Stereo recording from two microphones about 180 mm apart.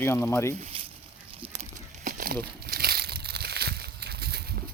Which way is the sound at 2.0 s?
50° right (ahead or behind).